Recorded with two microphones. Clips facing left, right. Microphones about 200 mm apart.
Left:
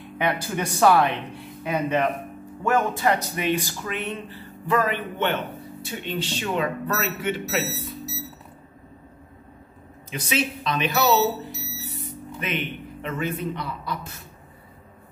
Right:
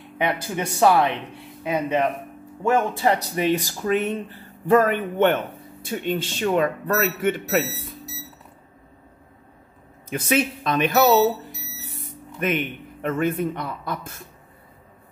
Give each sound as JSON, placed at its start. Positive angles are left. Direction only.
{"t": 0.2, "sound": "speech", "side_deg": -25}
{"t": 10.0, "sound": "speech", "side_deg": -50}
{"t": 12.4, "sound": "speech", "side_deg": -50}